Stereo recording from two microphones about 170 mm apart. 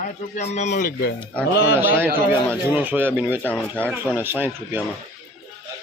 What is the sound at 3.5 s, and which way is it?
Speech, 10° left (ahead or behind).